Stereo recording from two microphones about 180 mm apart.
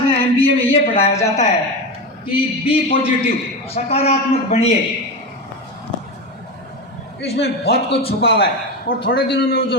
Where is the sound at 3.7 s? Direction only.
35° left (ahead or behind).